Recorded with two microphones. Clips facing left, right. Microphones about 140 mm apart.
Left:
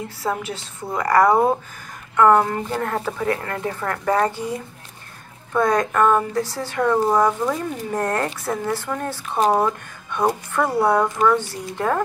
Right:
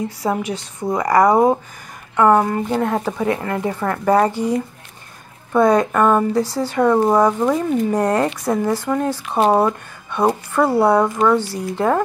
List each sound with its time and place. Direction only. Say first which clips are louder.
0.2 s speech: right 2 dB; 15° right (ahead or behind)